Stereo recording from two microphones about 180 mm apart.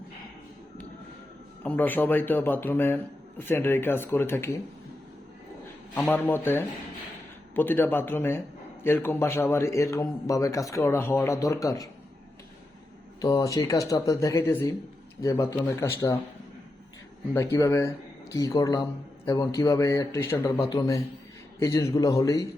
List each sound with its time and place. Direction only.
1.6 s a man's voice: 10° left (ahead or behind)
5.9 s a man's voice: 10° left (ahead or behind)
13.2 s a man's voice: 20° left (ahead or behind)
17.3 s a man's voice: 15° left (ahead or behind)